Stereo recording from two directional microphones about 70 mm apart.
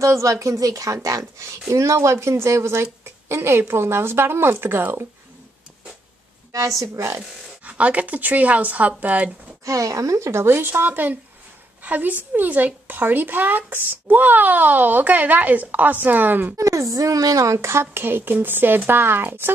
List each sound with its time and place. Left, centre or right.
0.0 s a woman's voice: right
6.8 s speech: right
7.2 s speech: centre
9.7 s a woman's voice: right
16.5 s a woman's voice: right